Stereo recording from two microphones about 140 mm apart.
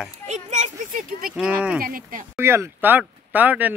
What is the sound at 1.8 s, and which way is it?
Speech, 90° right.